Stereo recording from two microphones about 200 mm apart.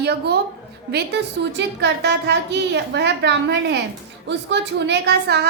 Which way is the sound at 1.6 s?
60° right (ahead or behind).